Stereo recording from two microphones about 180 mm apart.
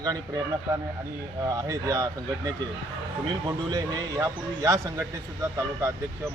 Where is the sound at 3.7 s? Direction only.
20° right (ahead or behind).